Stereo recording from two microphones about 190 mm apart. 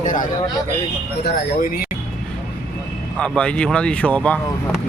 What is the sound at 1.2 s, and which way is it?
Speech, 60° left (ahead or behind).